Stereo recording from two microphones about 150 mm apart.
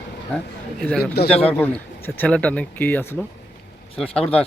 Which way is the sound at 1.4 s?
10° left (ahead or behind).